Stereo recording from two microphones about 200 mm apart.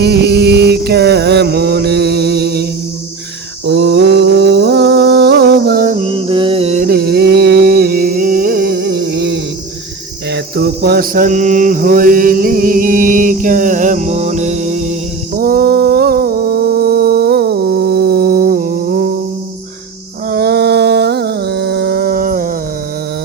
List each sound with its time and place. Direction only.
0.0 s mantra: 55° right (ahead or behind)
3.7 s mantra: 60° right (ahead or behind); by 6.8 s 30° right (ahead or behind)
6.8 s music: 50° right (ahead or behind)
10.3 s mantra: 50° right (ahead or behind); by 14.9 s 35° right (ahead or behind)
15.4 s a sound: 45° right (ahead or behind)
20.3 s a sound: 50° right (ahead or behind)